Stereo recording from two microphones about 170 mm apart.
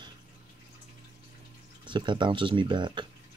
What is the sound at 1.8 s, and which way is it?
Speech, 30° right (ahead or behind).